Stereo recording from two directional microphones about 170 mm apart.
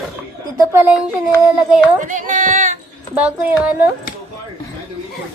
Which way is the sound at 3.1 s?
5° right (ahead or behind).